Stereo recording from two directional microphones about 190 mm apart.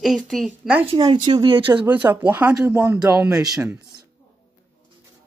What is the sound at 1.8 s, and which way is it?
Speech, 10° right (ahead or behind).